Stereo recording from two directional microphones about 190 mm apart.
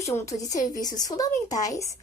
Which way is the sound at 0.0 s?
15° left (ahead or behind).